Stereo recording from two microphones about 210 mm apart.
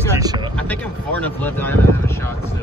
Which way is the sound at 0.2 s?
20° right (ahead or behind).